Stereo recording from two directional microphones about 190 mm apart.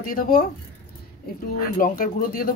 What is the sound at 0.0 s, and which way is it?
Speech, 50° left (ahead or behind).